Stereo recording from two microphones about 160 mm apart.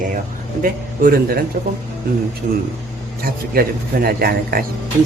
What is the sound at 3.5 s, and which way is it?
Speech, 70° right (ahead or behind).